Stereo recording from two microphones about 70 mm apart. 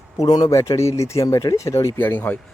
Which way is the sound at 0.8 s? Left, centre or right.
Left.